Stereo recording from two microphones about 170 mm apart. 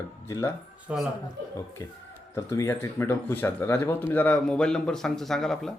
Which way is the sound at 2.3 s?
15° left (ahead or behind).